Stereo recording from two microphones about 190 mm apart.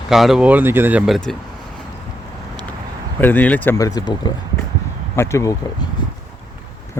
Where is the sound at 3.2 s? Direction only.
10° left (ahead or behind).